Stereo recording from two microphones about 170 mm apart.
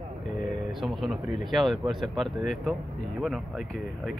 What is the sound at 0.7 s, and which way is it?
Speech, centre (ahead or behind).